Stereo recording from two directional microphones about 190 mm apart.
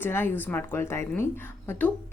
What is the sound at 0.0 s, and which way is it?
Speech, 10° left (ahead or behind).